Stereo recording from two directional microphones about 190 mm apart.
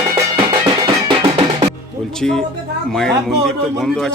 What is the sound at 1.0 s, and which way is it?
Music, 30° right (ahead or behind).